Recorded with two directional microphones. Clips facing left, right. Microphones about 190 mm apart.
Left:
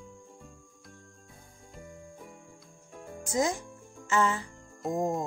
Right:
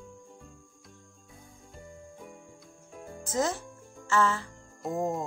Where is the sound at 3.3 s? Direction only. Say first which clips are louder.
Left 1 dB; 15° left (ahead or behind).